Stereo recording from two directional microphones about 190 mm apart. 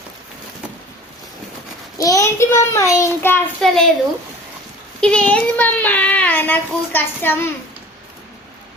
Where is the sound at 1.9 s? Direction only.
15° left (ahead or behind).